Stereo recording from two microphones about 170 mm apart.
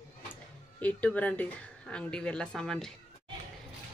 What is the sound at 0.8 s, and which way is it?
Speech, 10° left (ahead or behind).